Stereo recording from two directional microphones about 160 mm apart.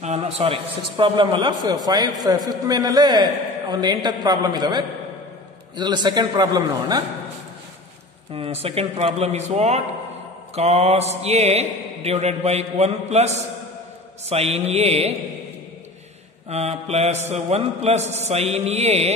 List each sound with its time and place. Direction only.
0.0 s a man's voice: 40° right (ahead or behind); by 7.0 s 25° right (ahead or behind)
8.3 s speech: 40° right (ahead or behind)
16.4 s speech: 40° right (ahead or behind)